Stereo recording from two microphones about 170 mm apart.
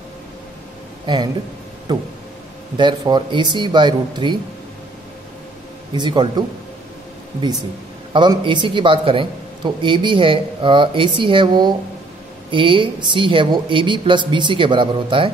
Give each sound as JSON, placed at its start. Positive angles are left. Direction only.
{"t": 1.0, "sound": "a man's voice", "side_deg": -25}
{"t": 5.9, "sound": "a man's voice", "side_deg": -25}
{"t": 8.1, "sound": "a man's voice", "side_deg": -25}